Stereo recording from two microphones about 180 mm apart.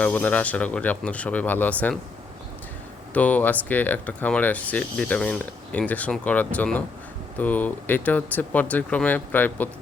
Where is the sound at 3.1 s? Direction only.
10° left (ahead or behind).